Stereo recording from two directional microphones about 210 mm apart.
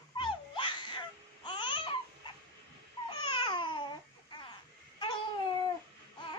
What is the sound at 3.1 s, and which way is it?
Baby cry, 20° left (ahead or behind).